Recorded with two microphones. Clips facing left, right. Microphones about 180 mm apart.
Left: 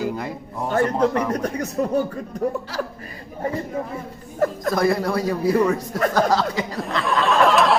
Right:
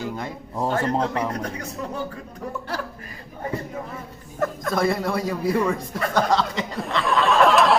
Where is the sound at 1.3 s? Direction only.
40° left (ahead or behind).